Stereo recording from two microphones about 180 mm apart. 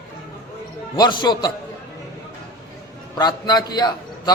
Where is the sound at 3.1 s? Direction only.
20° left (ahead or behind).